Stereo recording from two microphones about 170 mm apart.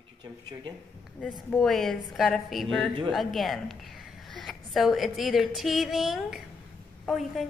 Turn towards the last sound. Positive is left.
turn(degrees=0)  # may be behind; listen again after turning